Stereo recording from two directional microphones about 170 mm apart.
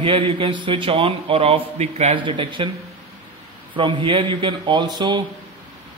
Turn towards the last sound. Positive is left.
turn(degrees=-25)  # may be behind; listen again after turning